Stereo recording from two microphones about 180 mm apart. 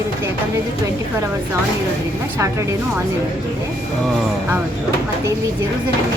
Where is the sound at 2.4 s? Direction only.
15° right (ahead or behind).